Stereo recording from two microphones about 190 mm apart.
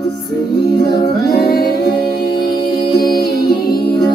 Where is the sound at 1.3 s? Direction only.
55° left (ahead or behind).